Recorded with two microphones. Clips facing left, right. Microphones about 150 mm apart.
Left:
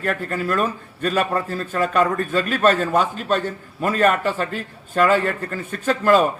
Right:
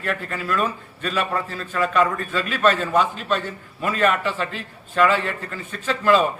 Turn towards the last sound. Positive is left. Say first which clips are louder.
# left 2 dB
turn(degrees=45)  # may be behind; listen again after turning